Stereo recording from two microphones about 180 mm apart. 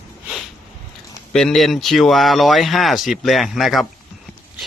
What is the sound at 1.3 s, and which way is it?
Speech, centre (ahead or behind).